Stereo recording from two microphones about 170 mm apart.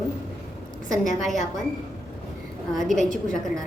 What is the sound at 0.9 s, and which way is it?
Speech, 50° left (ahead or behind).